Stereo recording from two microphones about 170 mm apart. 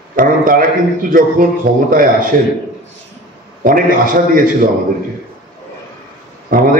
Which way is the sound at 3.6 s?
55° right (ahead or behind).